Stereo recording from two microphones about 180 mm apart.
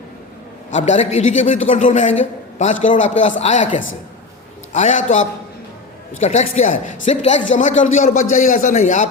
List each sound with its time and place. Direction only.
0.7 s a man's voice: 40° left (ahead or behind)
4.7 s a man's voice: 45° left (ahead or behind)